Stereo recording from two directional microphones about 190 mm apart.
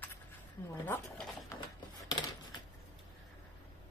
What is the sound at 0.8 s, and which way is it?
Speech, 10° left (ahead or behind).